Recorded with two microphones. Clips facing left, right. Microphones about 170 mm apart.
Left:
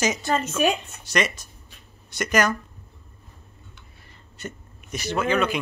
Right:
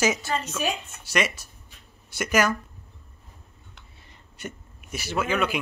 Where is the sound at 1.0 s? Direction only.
10° right (ahead or behind).